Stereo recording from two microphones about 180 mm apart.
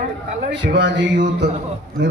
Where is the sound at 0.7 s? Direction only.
80° right.